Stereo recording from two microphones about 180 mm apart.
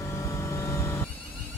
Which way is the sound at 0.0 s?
15° left (ahead or behind).